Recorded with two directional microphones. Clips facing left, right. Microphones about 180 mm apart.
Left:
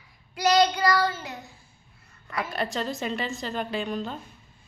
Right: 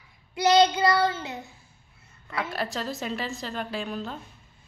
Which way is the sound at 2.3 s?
Centre (ahead or behind).